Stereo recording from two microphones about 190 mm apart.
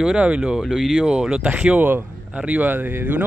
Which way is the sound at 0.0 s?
5° right (ahead or behind).